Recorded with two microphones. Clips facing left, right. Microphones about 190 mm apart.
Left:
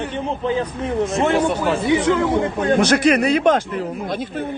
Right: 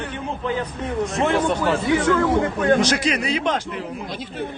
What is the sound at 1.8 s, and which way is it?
Speech, 20° left (ahead or behind).